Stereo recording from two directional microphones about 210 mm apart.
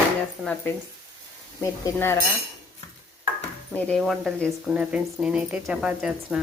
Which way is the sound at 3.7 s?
5° left (ahead or behind).